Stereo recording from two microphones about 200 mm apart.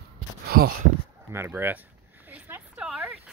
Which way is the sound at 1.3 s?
10° right (ahead or behind).